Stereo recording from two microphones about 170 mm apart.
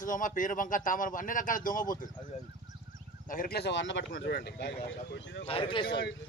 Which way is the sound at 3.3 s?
60° left (ahead or behind).